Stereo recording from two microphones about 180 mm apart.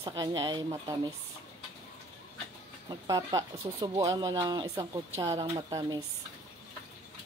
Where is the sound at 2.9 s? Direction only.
20° right (ahead or behind).